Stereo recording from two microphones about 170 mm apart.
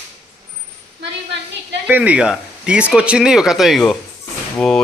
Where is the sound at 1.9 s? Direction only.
10° right (ahead or behind).